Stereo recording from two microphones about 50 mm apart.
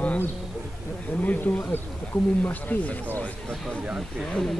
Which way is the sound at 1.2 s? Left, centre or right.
Left.